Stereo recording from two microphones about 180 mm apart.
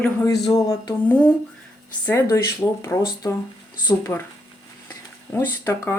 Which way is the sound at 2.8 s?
15° left (ahead or behind).